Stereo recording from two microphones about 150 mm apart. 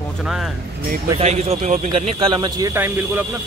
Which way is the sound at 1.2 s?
50° right (ahead or behind).